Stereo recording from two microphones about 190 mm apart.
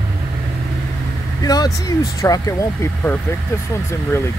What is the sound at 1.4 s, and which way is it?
Speech, 20° left (ahead or behind).